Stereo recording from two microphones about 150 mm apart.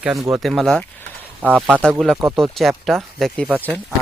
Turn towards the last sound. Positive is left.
turn(degrees=10)  # may be behind; listen again after turning